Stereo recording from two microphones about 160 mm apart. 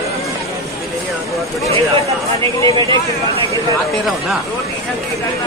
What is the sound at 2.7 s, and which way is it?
Speech, 35° right (ahead or behind).